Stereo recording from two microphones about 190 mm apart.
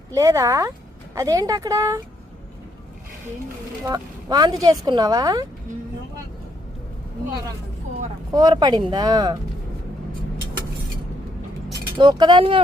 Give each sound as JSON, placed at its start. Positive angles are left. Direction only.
{"t": 0.1, "sound": "speech", "side_deg": -15}
{"t": 3.8, "sound": "speech", "side_deg": -20}
{"t": 8.3, "sound": "speech", "side_deg": -20}
{"t": 11.9, "sound": "speech", "side_deg": -25}